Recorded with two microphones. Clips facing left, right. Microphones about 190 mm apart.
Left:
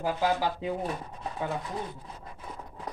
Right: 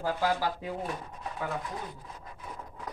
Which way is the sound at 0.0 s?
20° left (ahead or behind).